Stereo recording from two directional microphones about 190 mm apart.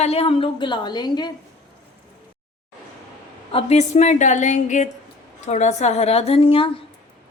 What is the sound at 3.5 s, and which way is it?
A woman's voice, 35° left (ahead or behind).